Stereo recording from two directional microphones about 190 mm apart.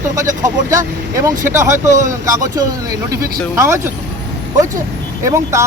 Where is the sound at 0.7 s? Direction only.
15° right (ahead or behind).